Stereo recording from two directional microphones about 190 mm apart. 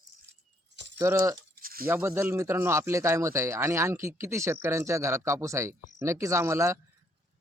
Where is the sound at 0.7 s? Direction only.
70° right (ahead or behind).